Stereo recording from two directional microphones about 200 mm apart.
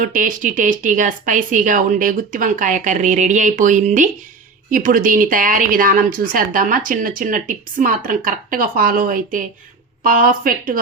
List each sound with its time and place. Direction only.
0.0 s a woman's voice: 40° right (ahead or behind)